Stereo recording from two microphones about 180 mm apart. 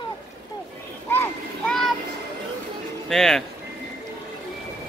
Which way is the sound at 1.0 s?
10° left (ahead or behind).